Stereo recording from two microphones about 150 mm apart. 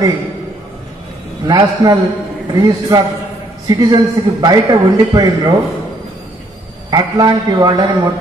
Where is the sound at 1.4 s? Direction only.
25° right (ahead or behind).